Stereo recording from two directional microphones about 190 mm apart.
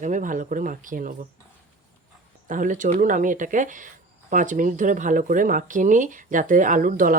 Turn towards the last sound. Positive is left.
turn(degrees=-45)  # may be behind; listen again after turning